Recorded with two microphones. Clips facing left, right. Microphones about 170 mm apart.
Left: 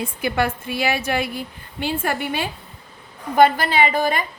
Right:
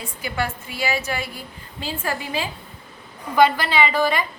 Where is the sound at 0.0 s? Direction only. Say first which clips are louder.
Left 5 dB; 65° left (ahead or behind).